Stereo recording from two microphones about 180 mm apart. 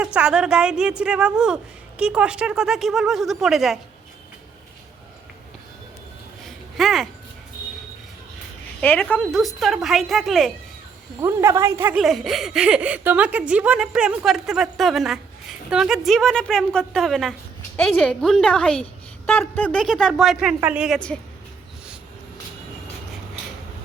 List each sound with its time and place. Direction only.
0.0 s speech: 5° right (ahead or behind)
6.4 s a sound: centre (ahead or behind)
8.8 s speech: 10° left (ahead or behind)
11.2 s a woman's voice: 15° right (ahead or behind)
11.9 s speech: centre (ahead or behind)